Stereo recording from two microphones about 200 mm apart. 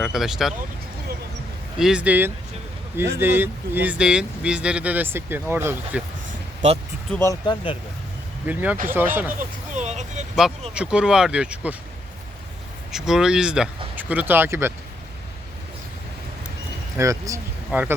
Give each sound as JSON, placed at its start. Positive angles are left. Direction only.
{"t": 0.0, "sound": "speech", "side_deg": 0}
{"t": 1.8, "sound": "speech", "side_deg": -5}
{"t": 6.2, "sound": "a sound", "side_deg": -40}
{"t": 7.1, "sound": "speech", "side_deg": 15}
{"t": 8.4, "sound": "speech", "side_deg": -10}
{"t": 9.7, "sound": "speech", "side_deg": -35}
{"t": 10.8, "sound": "speech", "side_deg": -5}
{"t": 12.9, "sound": "speech", "side_deg": 0}
{"t": 17.0, "sound": "speech", "side_deg": -15}